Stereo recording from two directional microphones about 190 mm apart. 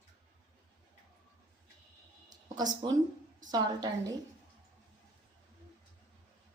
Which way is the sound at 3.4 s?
20° right (ahead or behind).